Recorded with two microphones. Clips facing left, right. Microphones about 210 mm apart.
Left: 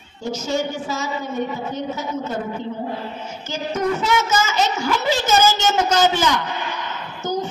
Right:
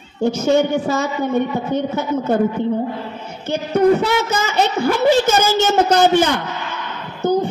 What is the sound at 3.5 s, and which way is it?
A woman's voice, 60° right (ahead or behind).